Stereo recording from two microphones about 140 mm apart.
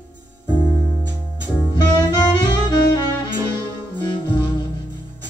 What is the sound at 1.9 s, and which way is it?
Music, 25° left (ahead or behind).